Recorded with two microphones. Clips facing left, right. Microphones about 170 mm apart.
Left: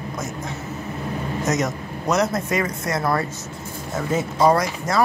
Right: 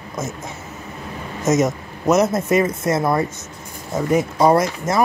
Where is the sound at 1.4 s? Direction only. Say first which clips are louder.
Right 7 dB; 20° right (ahead or behind).